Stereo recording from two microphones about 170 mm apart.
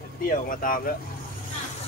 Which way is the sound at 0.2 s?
55° left (ahead or behind).